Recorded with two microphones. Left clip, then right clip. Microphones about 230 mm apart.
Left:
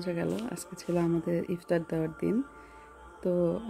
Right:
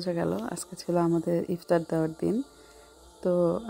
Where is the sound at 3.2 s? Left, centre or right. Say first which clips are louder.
Right 4 dB; centre.